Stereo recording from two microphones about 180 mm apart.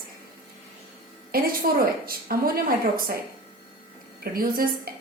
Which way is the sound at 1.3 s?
55° right (ahead or behind).